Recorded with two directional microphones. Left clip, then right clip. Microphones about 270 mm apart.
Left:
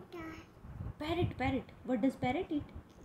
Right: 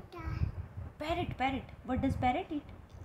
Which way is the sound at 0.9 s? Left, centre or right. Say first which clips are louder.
Right 2 dB; right.